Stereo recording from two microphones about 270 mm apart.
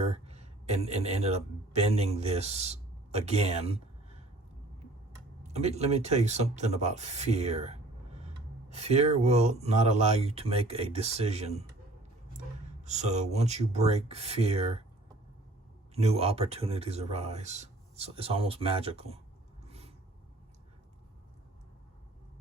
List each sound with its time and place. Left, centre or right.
0.0 s a sound: right
1.7 s speech: right
5.4 s speech: right
12.8 s speech: right
16.0 s speech: right
19.6 s a sound: right